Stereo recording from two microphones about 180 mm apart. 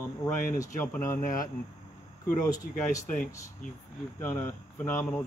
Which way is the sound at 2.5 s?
20° left (ahead or behind).